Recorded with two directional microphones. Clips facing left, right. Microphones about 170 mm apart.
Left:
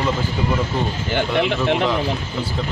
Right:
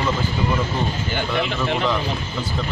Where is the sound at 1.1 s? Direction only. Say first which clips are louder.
Left 7 dB; 65° left (ahead or behind).